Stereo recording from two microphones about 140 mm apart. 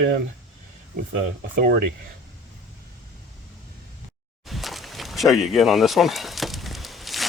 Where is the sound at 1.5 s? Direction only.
85° right.